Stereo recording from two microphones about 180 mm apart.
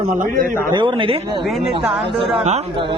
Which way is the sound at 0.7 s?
25° right (ahead or behind).